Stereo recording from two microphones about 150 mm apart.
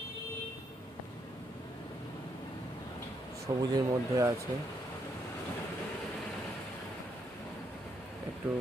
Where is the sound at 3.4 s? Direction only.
25° right (ahead or behind).